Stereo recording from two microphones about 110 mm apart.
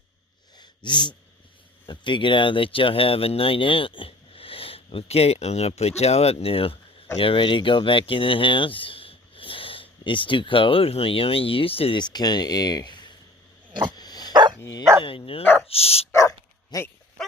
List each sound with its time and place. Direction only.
0.9 s a sound: 45° left (ahead or behind)
1.9 s speech: 45° left (ahead or behind)
11.9 s speech: 40° left (ahead or behind)
13.9 s dog: 40° left (ahead or behind)
15.0 s speech: 55° left (ahead or behind)
16.7 s speech: 35° left (ahead or behind)
17.2 s dog: centre (ahead or behind)